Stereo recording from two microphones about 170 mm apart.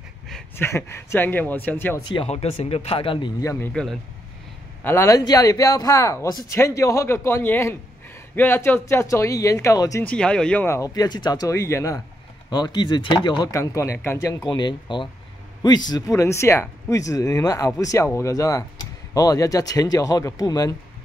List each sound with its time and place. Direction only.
0.6 s speech: 15° left (ahead or behind)
2.2 s speech: 40° left (ahead or behind); by 3.8 s 15° left (ahead or behind)
4.8 s speech: 15° left (ahead or behind)
10.0 s speech: 5° left (ahead or behind)
14.5 s speech: 25° left (ahead or behind)